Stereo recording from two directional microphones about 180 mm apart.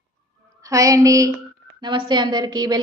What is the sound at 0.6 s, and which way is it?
A woman's voice, 20° right (ahead or behind).